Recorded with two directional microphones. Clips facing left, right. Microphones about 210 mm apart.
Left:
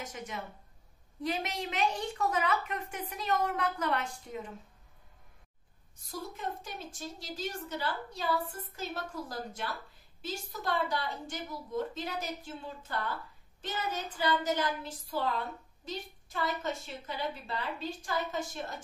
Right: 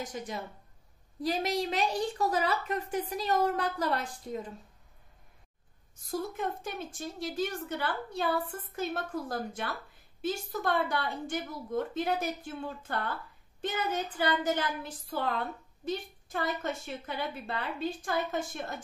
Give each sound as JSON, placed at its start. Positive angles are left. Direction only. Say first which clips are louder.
{"t": 0.0, "sound": "a woman's voice", "louder": "right 3 dB", "side_deg": -35}
{"t": 6.0, "sound": "a woman's voice", "louder": "right 5 dB", "side_deg": -55}
{"t": 15.8, "sound": "a woman's voice", "louder": "right 7 dB", "side_deg": -55}